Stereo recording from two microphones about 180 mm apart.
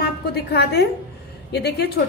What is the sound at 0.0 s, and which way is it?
A woman's voice, 65° left (ahead or behind).